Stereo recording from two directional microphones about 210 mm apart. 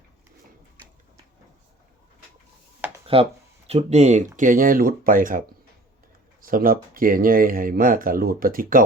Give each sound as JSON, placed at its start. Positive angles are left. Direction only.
{"t": 2.8, "sound": "a sound", "side_deg": -5}
{"t": 3.7, "sound": "speech", "side_deg": -30}
{"t": 6.4, "sound": "speech", "side_deg": -40}